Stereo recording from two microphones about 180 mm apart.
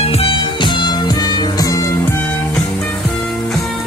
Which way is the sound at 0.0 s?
35° left (ahead or behind).